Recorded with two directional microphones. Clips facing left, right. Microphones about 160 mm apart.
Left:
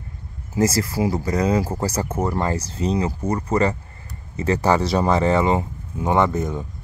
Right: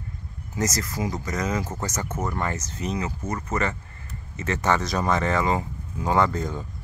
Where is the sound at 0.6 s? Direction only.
30° left (ahead or behind).